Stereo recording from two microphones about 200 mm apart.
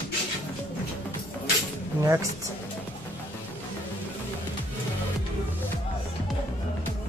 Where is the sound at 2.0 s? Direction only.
15° right (ahead or behind).